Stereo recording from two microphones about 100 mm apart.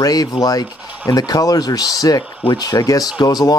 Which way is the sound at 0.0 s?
40° left (ahead or behind).